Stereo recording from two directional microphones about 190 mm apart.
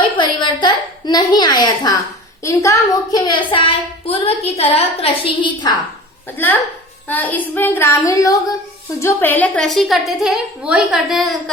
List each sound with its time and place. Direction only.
0.2 s a woman's voice: 25° left (ahead or behind)
6.2 s a woman's voice: 10° left (ahead or behind)